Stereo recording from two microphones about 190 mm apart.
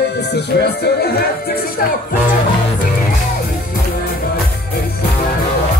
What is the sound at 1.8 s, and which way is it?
Speech, 50° left (ahead or behind).